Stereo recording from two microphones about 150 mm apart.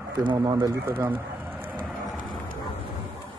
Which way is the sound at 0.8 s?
15° right (ahead or behind).